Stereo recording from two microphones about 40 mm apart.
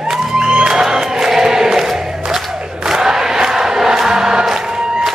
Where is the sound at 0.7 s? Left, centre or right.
Centre.